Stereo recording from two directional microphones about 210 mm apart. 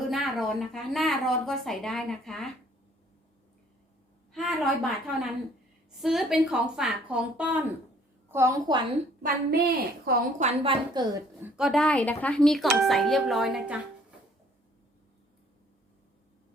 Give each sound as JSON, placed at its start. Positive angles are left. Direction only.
{"t": 0.1, "sound": "a woman's voice", "side_deg": 0}
{"t": 4.3, "sound": "a woman's voice", "side_deg": 0}
{"t": 9.2, "sound": "a woman's voice", "side_deg": -45}
{"t": 10.4, "sound": "a woman's voice", "side_deg": -25}